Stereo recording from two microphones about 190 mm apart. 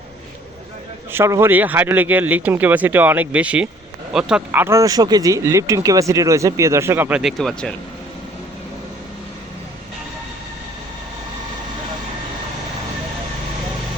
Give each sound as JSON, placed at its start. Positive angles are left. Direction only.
{"t": 1.1, "sound": "speech", "side_deg": -15}